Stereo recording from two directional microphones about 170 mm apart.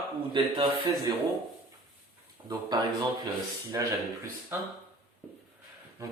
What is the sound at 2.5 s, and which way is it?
Speech, 25° right (ahead or behind).